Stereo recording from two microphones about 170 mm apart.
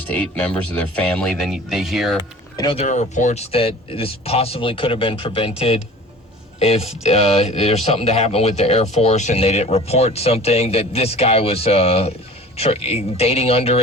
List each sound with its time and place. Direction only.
0.7 s speech: 10° left (ahead or behind)
2.6 s speech: 30° left (ahead or behind)
2.8 s speech: 45° left (ahead or behind)